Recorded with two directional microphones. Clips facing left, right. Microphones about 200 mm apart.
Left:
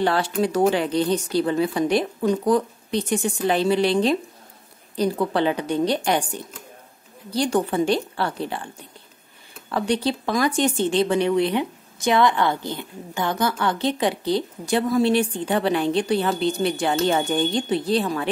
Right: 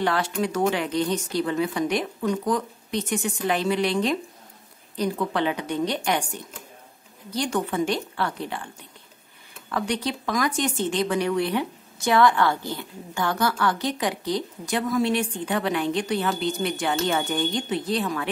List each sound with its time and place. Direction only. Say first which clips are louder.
0.0 s speech: left 3 dB; 30° left (ahead or behind)
7.2 s speech: left 4 dB; 35° left (ahead or behind)
9.7 s speech: left 4 dB; 30° left (ahead or behind)